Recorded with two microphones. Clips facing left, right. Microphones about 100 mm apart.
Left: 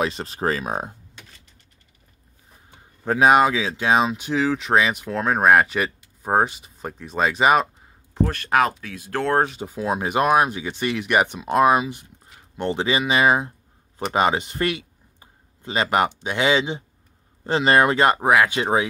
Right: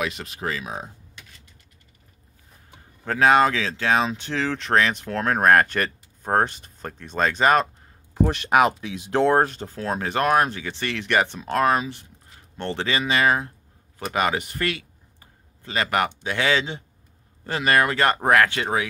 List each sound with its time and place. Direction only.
0.0 s speech: 35° left (ahead or behind); by 0.9 s 50° left (ahead or behind)
3.1 s speech: 15° left (ahead or behind)
8.3 s speech: 15° right (ahead or behind)
9.3 s speech: centre (ahead or behind); by 18.1 s 20° left (ahead or behind)
18.1 s speech: 10° left (ahead or behind)